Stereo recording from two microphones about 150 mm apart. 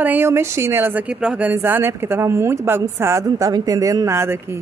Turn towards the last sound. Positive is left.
turn(degrees=-15)  # may be behind; listen again after turning